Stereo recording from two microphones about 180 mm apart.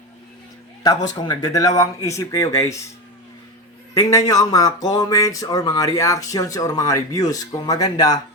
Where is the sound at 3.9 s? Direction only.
20° left (ahead or behind).